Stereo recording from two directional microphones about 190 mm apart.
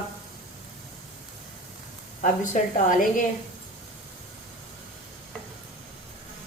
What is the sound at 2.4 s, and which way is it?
Speech, 45° left (ahead or behind).